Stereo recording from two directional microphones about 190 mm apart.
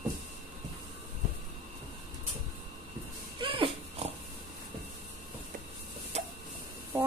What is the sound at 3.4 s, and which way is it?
Dog, 30° right (ahead or behind).